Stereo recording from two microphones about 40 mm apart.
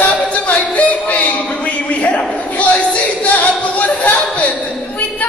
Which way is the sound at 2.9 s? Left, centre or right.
Left.